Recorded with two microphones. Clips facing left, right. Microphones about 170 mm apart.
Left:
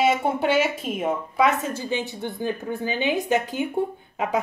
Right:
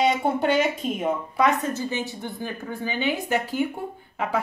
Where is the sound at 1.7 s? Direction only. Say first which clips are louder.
Even; 15° left (ahead or behind).